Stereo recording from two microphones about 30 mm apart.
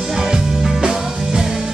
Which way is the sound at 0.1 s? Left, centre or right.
Centre.